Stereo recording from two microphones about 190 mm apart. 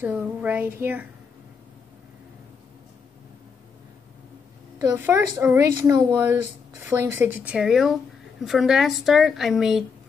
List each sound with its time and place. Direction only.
0.0 s a woman's voice: 10° right (ahead or behind)
4.7 s a woman's voice: 15° right (ahead or behind)